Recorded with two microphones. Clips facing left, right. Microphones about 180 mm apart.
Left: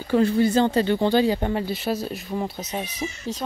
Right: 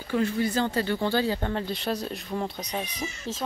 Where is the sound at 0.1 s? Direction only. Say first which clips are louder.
Left 7 dB; 30° left (ahead or behind).